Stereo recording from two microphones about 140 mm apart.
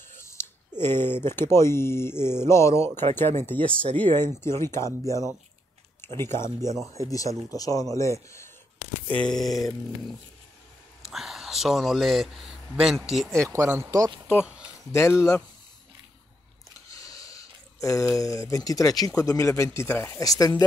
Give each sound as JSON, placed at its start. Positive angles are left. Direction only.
{"t": 0.1, "sound": "speech", "side_deg": 20}
{"t": 3.9, "sound": "speech", "side_deg": -35}
{"t": 4.4, "sound": "speech", "side_deg": 20}
{"t": 9.0, "sound": "speech", "side_deg": 10}
{"t": 13.3, "sound": "speech", "side_deg": -20}
{"t": 14.4, "sound": "a sound", "side_deg": -5}
{"t": 14.9, "sound": "speech", "side_deg": 20}
{"t": 16.9, "sound": "a sound", "side_deg": 25}
{"t": 18.5, "sound": "speech", "side_deg": 25}